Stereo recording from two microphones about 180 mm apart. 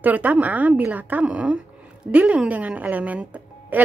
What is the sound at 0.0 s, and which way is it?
A woman's voice, 10° right (ahead or behind).